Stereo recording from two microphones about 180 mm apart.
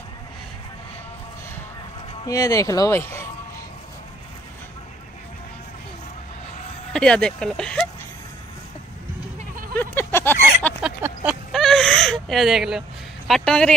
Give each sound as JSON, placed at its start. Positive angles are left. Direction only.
{"t": 2.2, "sound": "speech", "side_deg": 20}
{"t": 6.9, "sound": "speech", "side_deg": 5}
{"t": 9.8, "sound": "a sound", "side_deg": 10}
{"t": 10.8, "sound": "a sound", "side_deg": -10}
{"t": 11.5, "sound": "gasp", "side_deg": 0}
{"t": 13.3, "sound": "speech", "side_deg": 5}